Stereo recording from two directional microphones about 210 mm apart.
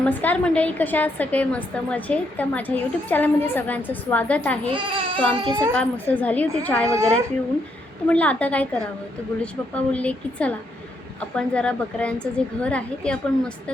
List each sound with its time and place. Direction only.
0.0 s a woman's voice: 10° left (ahead or behind)
4.7 s a child's voice: 25° right (ahead or behind)
5.7 s a woman's voice: 5° left (ahead or behind)
8.1 s a woman's voice: 5° left (ahead or behind)